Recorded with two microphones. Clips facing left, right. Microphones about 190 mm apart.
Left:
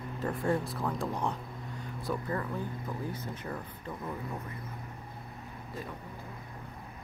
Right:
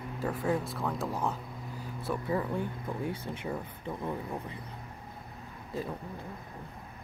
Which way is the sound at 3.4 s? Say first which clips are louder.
Right 3 dB; 15° right (ahead or behind).